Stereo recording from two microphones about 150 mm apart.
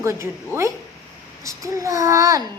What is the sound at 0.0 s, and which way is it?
A woman's voice, 20° right (ahead or behind).